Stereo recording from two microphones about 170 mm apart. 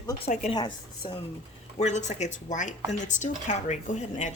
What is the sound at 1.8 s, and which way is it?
Speech, 45° left (ahead or behind).